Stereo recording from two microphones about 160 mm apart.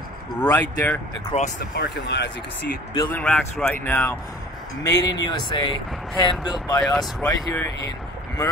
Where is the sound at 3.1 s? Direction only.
10° left (ahead or behind).